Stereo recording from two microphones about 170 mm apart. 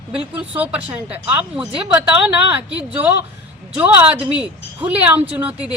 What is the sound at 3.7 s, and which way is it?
A woman's voice, 10° right (ahead or behind).